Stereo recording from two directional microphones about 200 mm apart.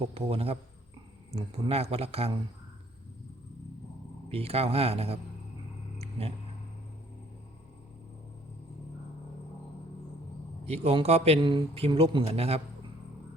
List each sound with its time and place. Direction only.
0.1 s speech: 30° right (ahead or behind)
4.3 s speech: 30° right (ahead or behind)
6.0 s a sound: 30° right (ahead or behind)
10.7 s speech: 30° right (ahead or behind)